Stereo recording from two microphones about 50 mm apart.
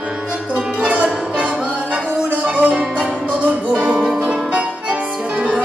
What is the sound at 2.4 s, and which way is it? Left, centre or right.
Music, right.